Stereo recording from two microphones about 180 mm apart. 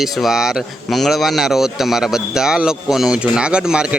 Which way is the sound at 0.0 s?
Centre (ahead or behind).